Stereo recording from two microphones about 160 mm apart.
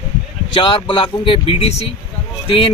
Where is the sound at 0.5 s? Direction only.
30° left (ahead or behind).